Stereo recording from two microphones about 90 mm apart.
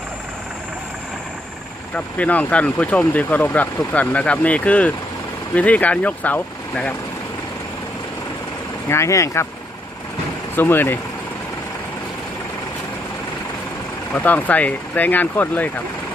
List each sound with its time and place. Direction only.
2.0 s speech: 15° left (ahead or behind)
8.9 s speech: 35° left (ahead or behind)
10.5 s speech: 25° left (ahead or behind)
14.1 s speech: 20° left (ahead or behind)